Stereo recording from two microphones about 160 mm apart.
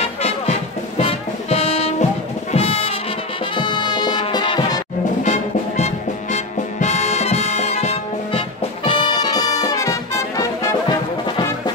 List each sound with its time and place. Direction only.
0.2 s music: 40° left (ahead or behind)
2.5 s brass instrument: 35° left (ahead or behind)
3.5 s music: 30° left (ahead or behind)
5.2 s music: 45° left (ahead or behind); by 11.7 s 25° left (ahead or behind)